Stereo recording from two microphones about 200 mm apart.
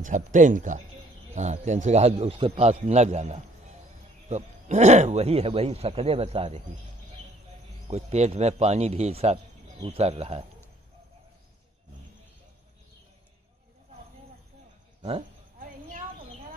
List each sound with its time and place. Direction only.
0.0 s a man's voice: 40° right (ahead or behind)
7.9 s a man's voice: 35° right (ahead or behind)
15.0 s a man's voice: 30° right (ahead or behind)
15.6 s a sound: 40° right (ahead or behind)